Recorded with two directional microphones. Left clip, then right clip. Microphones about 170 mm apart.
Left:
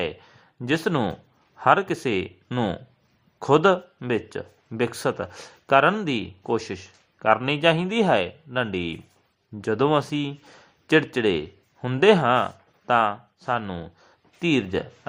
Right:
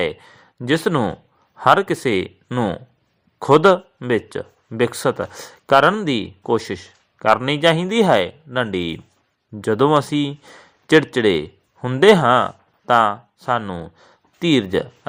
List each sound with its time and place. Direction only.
0.0 s a man's voice: 20° right (ahead or behind)
2.6 s speech: 5° right (ahead or behind)
3.3 s a man's voice: 20° right (ahead or behind)
13.6 s speech: 10° right (ahead or behind)